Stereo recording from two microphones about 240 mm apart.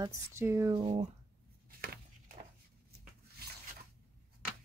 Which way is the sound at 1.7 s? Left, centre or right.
Right.